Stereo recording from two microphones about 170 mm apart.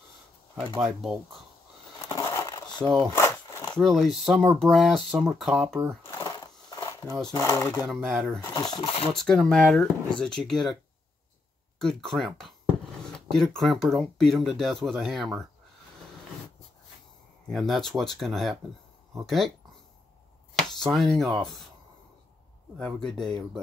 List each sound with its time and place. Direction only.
0.8 s speech: centre (ahead or behind)
2.0 s crushing: 15° left (ahead or behind)
3.2 s a sound: 15° left (ahead or behind)
3.7 s speech: centre (ahead or behind)
6.0 s a sound: 25° left (ahead or behind)
7.3 s speech: 15° left (ahead or behind)
7.9 s speech: centre (ahead or behind)
8.5 s stir: 25° left (ahead or behind)
9.1 s speech: centre (ahead or behind)
11.8 s speech: 5° left (ahead or behind)
17.5 s speech: centre (ahead or behind)
20.5 s speech: centre (ahead or behind)
22.8 s speech: 5° left (ahead or behind)